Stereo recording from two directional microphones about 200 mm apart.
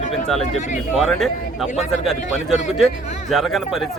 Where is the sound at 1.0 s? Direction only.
Centre (ahead or behind).